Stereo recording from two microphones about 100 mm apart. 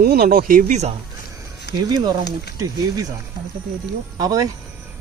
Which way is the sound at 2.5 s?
35° right (ahead or behind).